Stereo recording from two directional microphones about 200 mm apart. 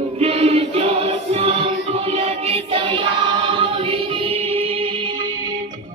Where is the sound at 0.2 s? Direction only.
30° right (ahead or behind).